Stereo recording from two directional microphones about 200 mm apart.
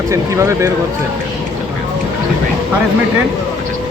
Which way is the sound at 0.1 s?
15° right (ahead or behind).